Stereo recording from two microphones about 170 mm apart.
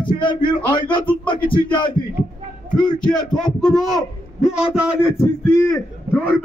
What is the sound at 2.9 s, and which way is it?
Speech, 5° left (ahead or behind).